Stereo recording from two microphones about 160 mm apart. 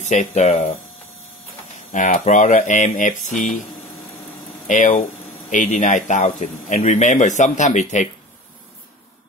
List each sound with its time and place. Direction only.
0.0 s speech: 45° left (ahead or behind)
1.9 s speech: 55° left (ahead or behind)
4.6 s speech: 55° left (ahead or behind)